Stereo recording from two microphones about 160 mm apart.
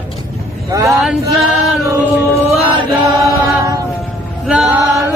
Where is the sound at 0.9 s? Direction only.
Centre (ahead or behind).